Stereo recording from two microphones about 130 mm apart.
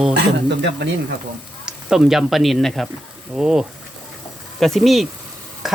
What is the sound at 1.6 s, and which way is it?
Speech, 5° right (ahead or behind).